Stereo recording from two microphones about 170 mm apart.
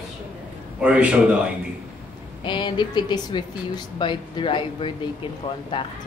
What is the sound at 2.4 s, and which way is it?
Speech, 25° left (ahead or behind).